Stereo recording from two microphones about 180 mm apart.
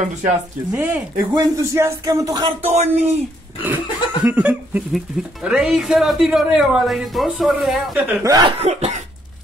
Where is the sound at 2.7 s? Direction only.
35° right (ahead or behind).